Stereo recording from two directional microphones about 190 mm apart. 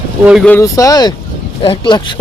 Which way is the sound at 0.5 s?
15° left (ahead or behind).